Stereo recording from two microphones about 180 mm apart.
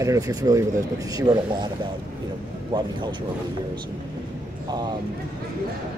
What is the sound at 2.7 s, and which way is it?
Speech, 25° right (ahead or behind).